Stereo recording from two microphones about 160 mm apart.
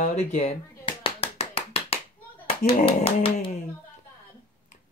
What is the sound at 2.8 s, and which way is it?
Speech, 35° left (ahead or behind).